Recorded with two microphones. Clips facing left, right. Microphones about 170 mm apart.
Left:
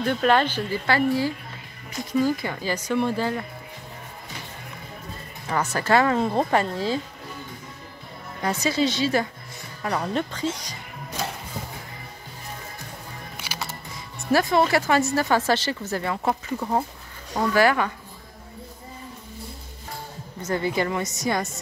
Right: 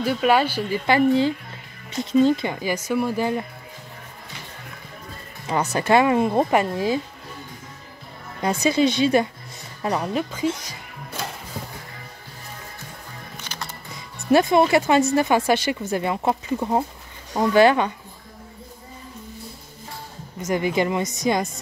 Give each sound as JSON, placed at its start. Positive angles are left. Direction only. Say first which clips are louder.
{"t": 0.0, "sound": "speech", "louder": "right 1 dB", "side_deg": -5}
{"t": 5.5, "sound": "speech", "louder": "right 3 dB", "side_deg": -20}
{"t": 8.4, "sound": "speech", "louder": "right 4 dB", "side_deg": -15}
{"t": 13.4, "sound": "music", "louder": "left 2 dB", "side_deg": 5}
{"t": 14.1, "sound": "speech", "louder": "right 4 dB", "side_deg": -20}
{"t": 20.4, "sound": "speech", "louder": "right 3 dB", "side_deg": -15}